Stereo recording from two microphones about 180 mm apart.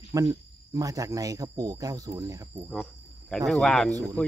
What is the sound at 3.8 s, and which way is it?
Speech, 20° right (ahead or behind).